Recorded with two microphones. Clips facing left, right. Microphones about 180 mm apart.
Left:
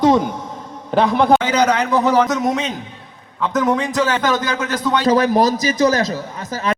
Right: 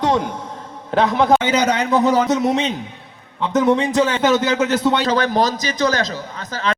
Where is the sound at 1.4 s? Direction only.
25° right (ahead or behind).